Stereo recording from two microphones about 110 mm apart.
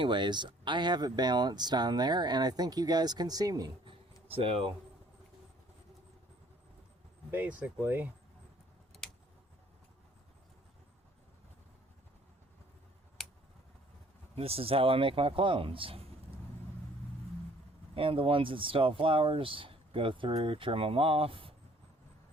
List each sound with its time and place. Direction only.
0.0 s speech: 45° right (ahead or behind)
4.4 s speech: 60° right (ahead or behind)
7.3 s speech: 15° right (ahead or behind)
14.3 s speech: 65° right (ahead or behind)
17.9 s speech: 55° right (ahead or behind)